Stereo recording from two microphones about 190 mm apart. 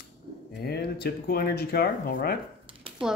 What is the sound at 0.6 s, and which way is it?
Speech, 55° left (ahead or behind).